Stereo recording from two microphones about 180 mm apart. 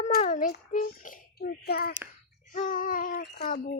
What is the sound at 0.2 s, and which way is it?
Child singing, 40° left (ahead or behind).